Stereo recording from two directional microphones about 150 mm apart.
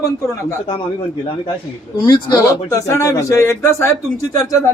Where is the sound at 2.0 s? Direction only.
30° left (ahead or behind).